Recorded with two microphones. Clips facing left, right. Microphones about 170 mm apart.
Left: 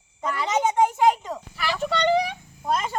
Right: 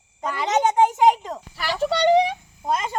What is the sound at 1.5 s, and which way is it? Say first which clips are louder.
Speech: right 3 dB; 40° right (ahead or behind).